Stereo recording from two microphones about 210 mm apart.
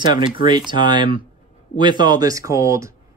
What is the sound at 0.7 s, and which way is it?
Speech, 20° right (ahead or behind).